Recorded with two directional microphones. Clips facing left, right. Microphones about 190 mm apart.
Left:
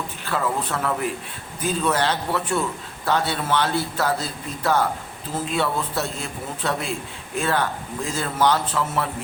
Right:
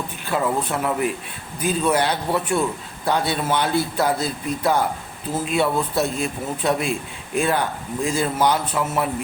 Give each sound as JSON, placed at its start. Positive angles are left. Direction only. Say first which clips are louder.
{"t": 0.3, "sound": "a man's voice", "louder": "right 3 dB", "side_deg": -15}